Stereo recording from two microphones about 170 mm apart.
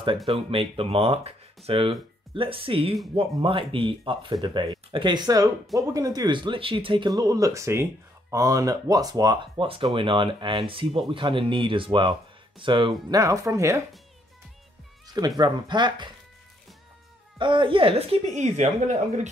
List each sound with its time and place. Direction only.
0.3 s speech: 30° right (ahead or behind)
13.1 s speech: 20° right (ahead or behind)
15.0 s speech: 25° right (ahead or behind)
17.4 s speech: 30° right (ahead or behind); by 19.2 s 45° right (ahead or behind)